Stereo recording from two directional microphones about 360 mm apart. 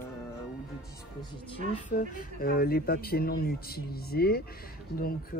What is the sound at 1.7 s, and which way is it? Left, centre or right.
Speech, left.